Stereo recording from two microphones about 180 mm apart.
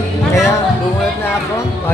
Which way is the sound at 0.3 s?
15° left (ahead or behind).